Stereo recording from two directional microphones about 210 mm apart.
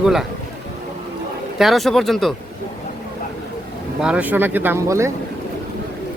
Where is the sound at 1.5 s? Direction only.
Centre (ahead or behind).